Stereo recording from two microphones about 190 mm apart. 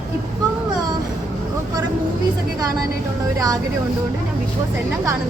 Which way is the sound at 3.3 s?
20° right (ahead or behind).